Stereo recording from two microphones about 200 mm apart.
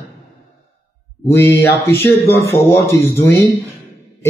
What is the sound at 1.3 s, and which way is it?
A man's voice, 10° left (ahead or behind).